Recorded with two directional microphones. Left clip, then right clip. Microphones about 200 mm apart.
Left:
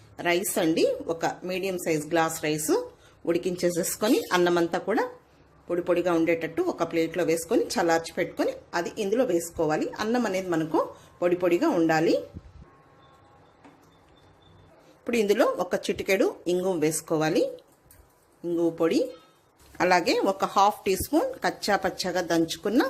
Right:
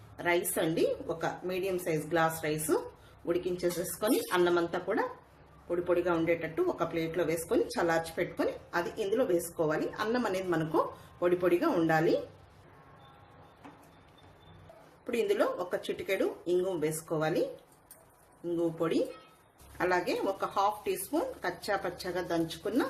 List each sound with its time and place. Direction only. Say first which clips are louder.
0.2 s speech: left 5 dB; 45° left (ahead or behind)
15.0 s speech: left 6 dB; 45° left (ahead or behind)
18.8 s speech: left 6 dB; 40° left (ahead or behind)